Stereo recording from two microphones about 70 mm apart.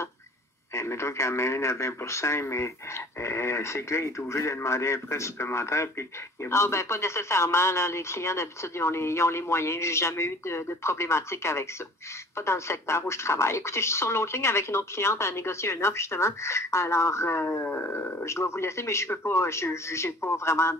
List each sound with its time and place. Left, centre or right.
0.7 s a man's voice: left